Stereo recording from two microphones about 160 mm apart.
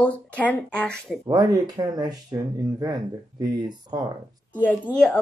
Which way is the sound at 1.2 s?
25° right (ahead or behind).